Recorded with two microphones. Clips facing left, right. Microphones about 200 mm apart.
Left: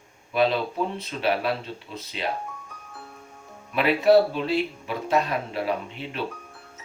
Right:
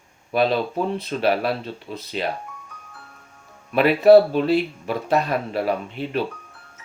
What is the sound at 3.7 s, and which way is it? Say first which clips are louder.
Speech: right 5 dB; 45° right (ahead or behind).